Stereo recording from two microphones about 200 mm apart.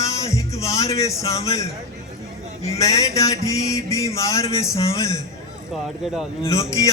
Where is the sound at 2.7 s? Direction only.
15° left (ahead or behind).